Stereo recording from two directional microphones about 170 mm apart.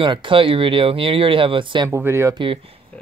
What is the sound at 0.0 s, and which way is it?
Speech, 30° right (ahead or behind).